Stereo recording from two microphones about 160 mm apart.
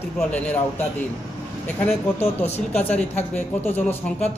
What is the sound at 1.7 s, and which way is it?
Speech, 10° left (ahead or behind).